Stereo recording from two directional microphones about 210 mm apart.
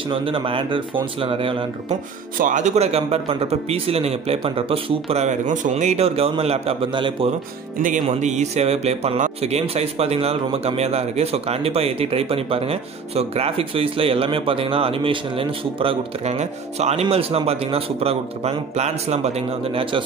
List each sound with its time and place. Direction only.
0.1 s speech: 25° right (ahead or behind)
2.3 s speech: 40° right (ahead or behind)
7.8 s speech: 35° right (ahead or behind)